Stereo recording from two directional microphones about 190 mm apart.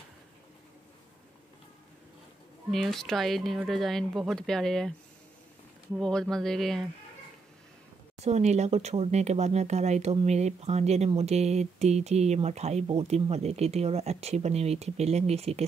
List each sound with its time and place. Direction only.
2.7 s speech: centre (ahead or behind)
5.9 s speech: centre (ahead or behind)
8.2 s speech: 35° right (ahead or behind)